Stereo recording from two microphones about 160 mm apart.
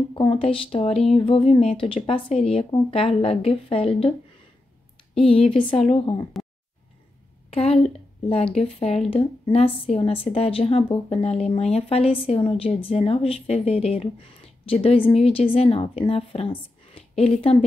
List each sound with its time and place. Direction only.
0.1 s a woman's voice: 30° left (ahead or behind)
5.2 s a woman's voice: 35° left (ahead or behind)
7.5 s a sound: 35° left (ahead or behind)
8.3 s a woman's voice: 40° left (ahead or behind)